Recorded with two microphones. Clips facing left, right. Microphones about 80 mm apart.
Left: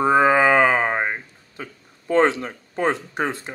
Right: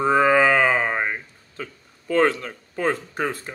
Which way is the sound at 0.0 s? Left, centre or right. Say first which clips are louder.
Left 1 dB; centre.